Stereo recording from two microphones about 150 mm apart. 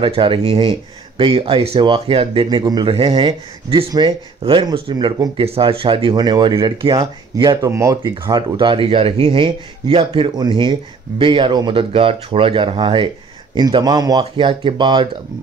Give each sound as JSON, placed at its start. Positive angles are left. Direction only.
{"t": 0.0, "sound": "speech", "side_deg": -35}